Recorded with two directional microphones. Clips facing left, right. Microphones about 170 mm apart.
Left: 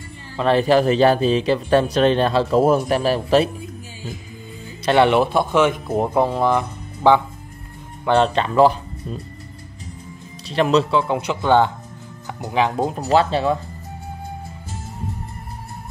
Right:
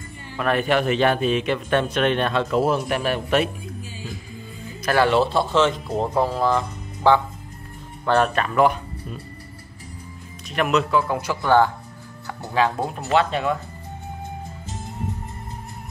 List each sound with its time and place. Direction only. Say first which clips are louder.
0.4 s speech: left 5 dB; 30° left (ahead or behind)
4.8 s speech: left 3 dB; 20° left (ahead or behind)
10.5 s speech: left 3 dB; 30° left (ahead or behind)
12.9 s speech: left 3 dB; 35° left (ahead or behind)